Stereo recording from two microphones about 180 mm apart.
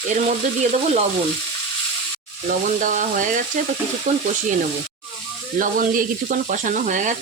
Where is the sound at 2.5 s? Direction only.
45° right (ahead or behind).